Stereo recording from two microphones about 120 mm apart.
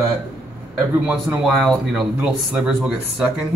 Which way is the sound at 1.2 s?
Centre (ahead or behind).